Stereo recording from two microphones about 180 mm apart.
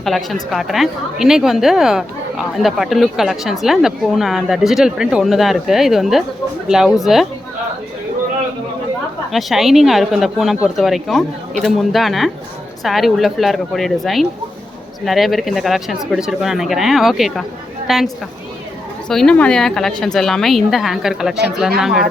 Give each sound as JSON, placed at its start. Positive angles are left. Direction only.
{"t": 0.0, "sound": "speech", "side_deg": 0}
{"t": 9.3, "sound": "a woman's voice", "side_deg": 0}